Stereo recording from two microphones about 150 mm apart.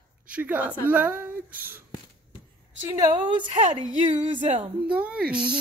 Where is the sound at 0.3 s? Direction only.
10° right (ahead or behind).